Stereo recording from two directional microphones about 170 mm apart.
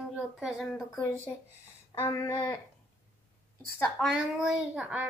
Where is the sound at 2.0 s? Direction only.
15° left (ahead or behind).